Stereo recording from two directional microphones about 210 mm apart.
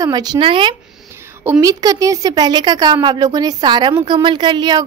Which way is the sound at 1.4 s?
15° right (ahead or behind).